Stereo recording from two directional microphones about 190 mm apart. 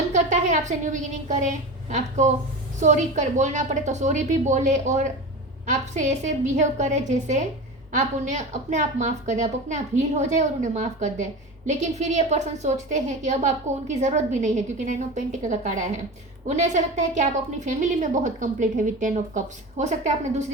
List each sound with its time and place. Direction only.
0.1 s a woman's voice: 40° right (ahead or behind)